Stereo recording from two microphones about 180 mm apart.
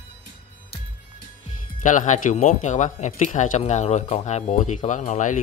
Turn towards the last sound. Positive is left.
turn(degrees=45)  # may be behind; listen again after turning